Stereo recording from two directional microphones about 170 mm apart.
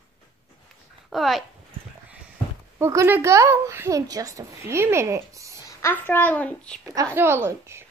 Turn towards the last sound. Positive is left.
turn(degrees=-15)  # may be behind; listen again after turning